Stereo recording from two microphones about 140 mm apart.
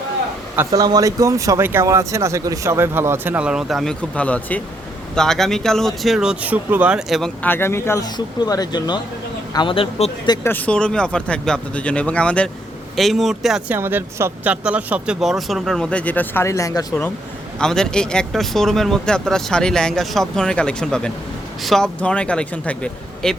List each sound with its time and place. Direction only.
0.7 s speech: 25° right (ahead or behind); by 7.3 s 5° right (ahead or behind)
7.4 s speech: 15° left (ahead or behind); by 10.3 s 40° left (ahead or behind)
10.4 s speech: 10° left (ahead or behind)
13.7 s speech: 15° right (ahead or behind); by 17.1 s 25° left (ahead or behind)
17.6 s speech: 5° left (ahead or behind)